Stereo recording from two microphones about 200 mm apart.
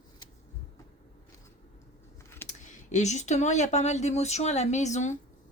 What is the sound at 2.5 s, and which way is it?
Speech, 35° left (ahead or behind).